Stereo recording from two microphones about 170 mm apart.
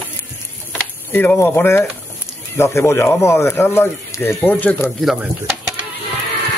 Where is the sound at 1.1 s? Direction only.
10° left (ahead or behind).